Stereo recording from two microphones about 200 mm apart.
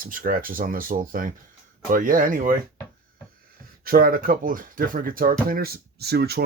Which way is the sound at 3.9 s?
45° right (ahead or behind).